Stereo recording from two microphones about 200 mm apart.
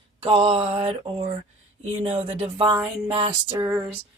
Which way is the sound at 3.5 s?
10° right (ahead or behind).